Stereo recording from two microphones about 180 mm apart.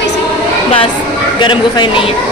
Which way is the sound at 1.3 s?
25° left (ahead or behind).